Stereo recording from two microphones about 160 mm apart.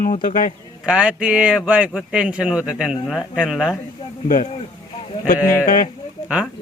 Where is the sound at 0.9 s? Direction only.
5° right (ahead or behind).